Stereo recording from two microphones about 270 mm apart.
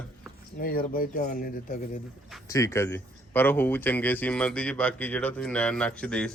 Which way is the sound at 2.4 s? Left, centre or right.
Centre.